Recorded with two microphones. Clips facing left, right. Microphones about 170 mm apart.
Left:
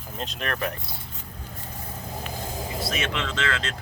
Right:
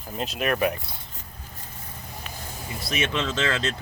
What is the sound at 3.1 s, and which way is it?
Speech, 25° right (ahead or behind).